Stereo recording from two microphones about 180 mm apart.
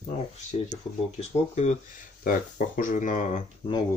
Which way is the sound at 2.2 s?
50° left (ahead or behind).